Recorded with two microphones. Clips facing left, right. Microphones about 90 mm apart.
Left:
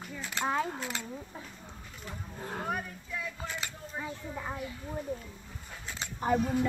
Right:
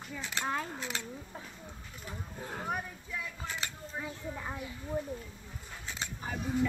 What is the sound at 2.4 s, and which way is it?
Speech, 10° left (ahead or behind).